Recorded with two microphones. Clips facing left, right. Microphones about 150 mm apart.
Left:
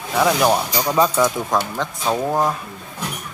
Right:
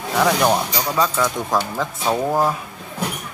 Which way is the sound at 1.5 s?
5° right (ahead or behind).